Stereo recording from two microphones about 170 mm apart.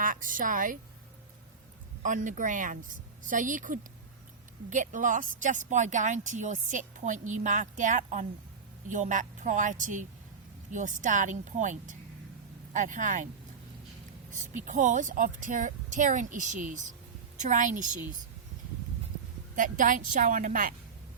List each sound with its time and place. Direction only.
0.0 s a woman's voice: 55° right (ahead or behind)
2.0 s speech: 50° right (ahead or behind)
14.7 s speech: 50° right (ahead or behind)
19.5 s speech: 50° right (ahead or behind)